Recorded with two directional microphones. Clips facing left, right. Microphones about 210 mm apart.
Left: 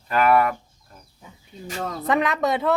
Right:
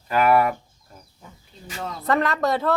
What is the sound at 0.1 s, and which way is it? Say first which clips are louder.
Speech: even; 5° right (ahead or behind).